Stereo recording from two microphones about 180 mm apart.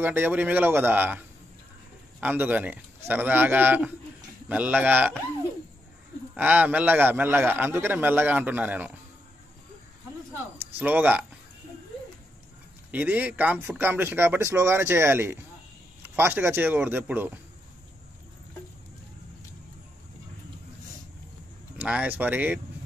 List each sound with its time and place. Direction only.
0.0 s a man's voice: 10° right (ahead or behind)
6.3 s a man's voice: 10° right (ahead or behind)
10.8 s a man's voice: 10° right (ahead or behind)
12.9 s a man's voice: 10° right (ahead or behind)
21.7 s a man's voice: 5° right (ahead or behind)